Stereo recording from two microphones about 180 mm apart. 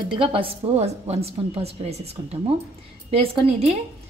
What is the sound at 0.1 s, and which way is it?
A woman's voice, 30° right (ahead or behind).